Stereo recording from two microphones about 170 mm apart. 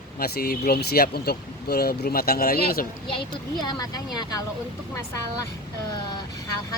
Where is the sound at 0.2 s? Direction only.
65° left (ahead or behind).